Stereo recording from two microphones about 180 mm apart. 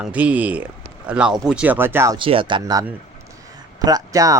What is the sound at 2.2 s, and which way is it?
Speech, 30° right (ahead or behind).